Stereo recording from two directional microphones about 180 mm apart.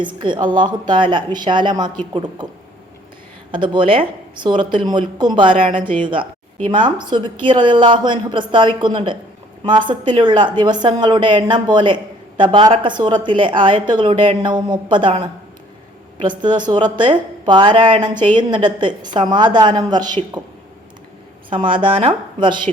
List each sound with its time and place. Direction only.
0.2 s a woman's voice: 25° right (ahead or behind)
3.5 s a woman's voice: 25° right (ahead or behind)
16.4 s a woman's voice: 25° right (ahead or behind)
21.5 s a woman's voice: 30° right (ahead or behind)